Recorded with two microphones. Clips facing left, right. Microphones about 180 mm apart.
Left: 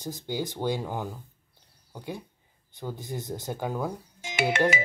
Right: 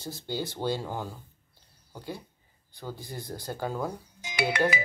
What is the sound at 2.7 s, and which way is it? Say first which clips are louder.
Speech: left 4 dB; 20° left (ahead or behind).